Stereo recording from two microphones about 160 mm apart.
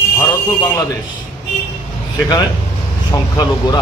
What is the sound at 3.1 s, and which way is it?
Speech, 25° left (ahead or behind).